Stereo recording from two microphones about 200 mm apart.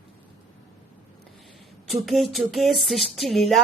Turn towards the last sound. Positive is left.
turn(degrees=0)  # may be behind; listen again after turning